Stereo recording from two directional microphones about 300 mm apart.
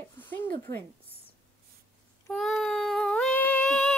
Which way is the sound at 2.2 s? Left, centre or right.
Centre.